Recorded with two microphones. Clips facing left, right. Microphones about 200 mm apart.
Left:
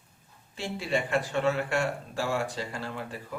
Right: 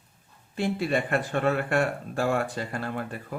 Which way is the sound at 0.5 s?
55° right (ahead or behind).